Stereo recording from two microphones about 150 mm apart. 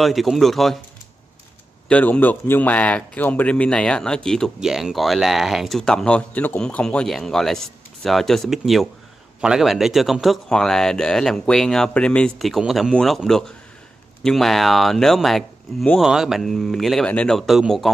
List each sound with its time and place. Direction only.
0.0 s speech: centre (ahead or behind)
1.9 s speech: 10° left (ahead or behind)